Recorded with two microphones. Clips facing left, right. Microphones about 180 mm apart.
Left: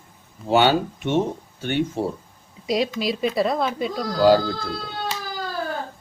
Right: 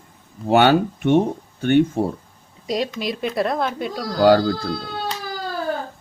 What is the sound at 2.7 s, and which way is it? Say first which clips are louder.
A woman's voice: left 1 dB; 5° left (ahead or behind).